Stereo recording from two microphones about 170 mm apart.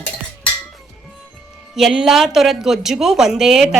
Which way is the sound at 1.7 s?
5° right (ahead or behind).